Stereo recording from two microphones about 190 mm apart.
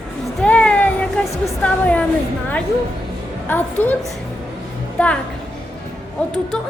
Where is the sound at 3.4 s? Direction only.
10° left (ahead or behind).